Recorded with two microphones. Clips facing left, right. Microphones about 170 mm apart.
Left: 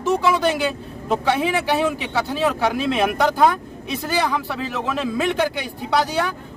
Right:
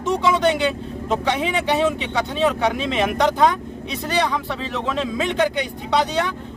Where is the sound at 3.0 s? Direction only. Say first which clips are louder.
Even; 5° left (ahead or behind).